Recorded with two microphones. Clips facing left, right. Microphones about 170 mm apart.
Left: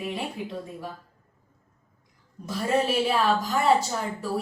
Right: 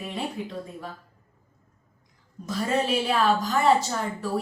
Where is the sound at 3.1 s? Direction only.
5° left (ahead or behind).